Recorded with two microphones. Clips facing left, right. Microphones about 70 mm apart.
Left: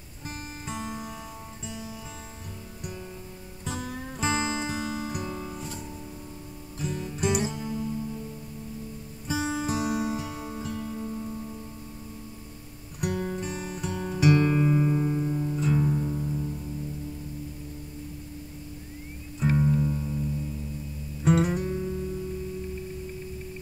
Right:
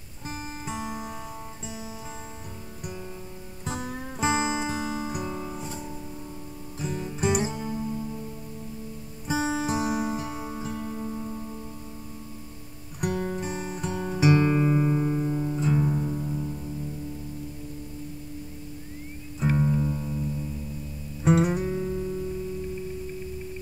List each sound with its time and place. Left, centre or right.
0.3 s music: centre
3.6 s music: centre
9.3 s music: centre
13.0 s music: centre
19.4 s music: centre
21.2 s music: centre